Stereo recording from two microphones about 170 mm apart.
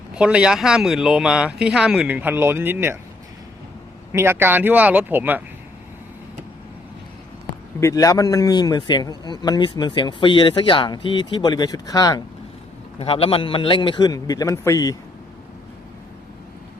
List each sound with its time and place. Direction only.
0.1 s speech: 5° right (ahead or behind)
4.1 s speech: 15° right (ahead or behind)
7.8 s speech: 20° left (ahead or behind)
13.0 s speech: 35° left (ahead or behind); by 14.9 s 20° left (ahead or behind)